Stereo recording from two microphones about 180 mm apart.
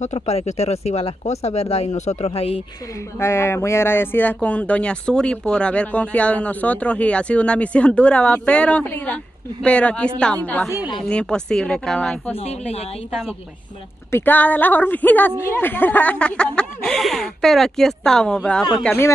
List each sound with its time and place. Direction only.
0.0 s speech: 35° left (ahead or behind)
3.2 s speech: 15° left (ahead or behind)
12.4 s speech: 35° left (ahead or behind)
14.1 s speech: 10° left (ahead or behind)